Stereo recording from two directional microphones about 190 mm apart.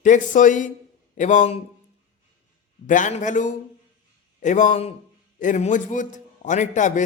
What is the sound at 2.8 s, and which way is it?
A man's voice, 40° left (ahead or behind).